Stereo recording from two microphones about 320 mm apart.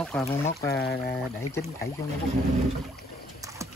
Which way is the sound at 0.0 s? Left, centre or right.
Centre.